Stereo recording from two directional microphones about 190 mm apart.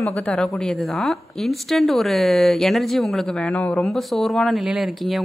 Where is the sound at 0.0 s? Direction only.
5° left (ahead or behind).